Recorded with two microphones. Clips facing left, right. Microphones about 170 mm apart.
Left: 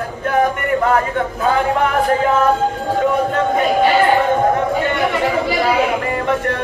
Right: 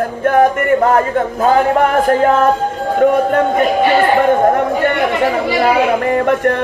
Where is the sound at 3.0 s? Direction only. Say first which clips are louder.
Right 7 dB; 55° right (ahead or behind).